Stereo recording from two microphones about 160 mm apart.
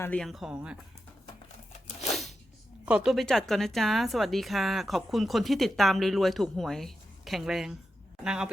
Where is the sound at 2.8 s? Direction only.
5° right (ahead or behind).